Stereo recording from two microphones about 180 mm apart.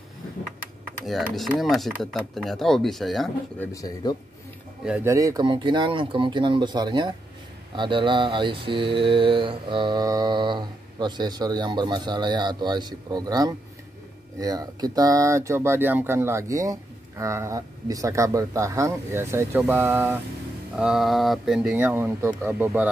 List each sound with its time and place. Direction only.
1.5 s speech: centre (ahead or behind)
3.7 s speech: 20° left (ahead or behind)
4.8 s speech: 5° right (ahead or behind)
5.1 s speech: 20° right (ahead or behind)